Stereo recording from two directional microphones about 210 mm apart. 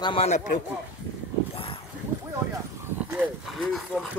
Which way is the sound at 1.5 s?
25° left (ahead or behind).